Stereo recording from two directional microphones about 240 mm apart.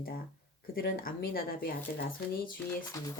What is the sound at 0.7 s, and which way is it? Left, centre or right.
Speech, left.